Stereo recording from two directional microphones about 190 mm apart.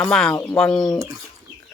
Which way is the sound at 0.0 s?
5° left (ahead or behind).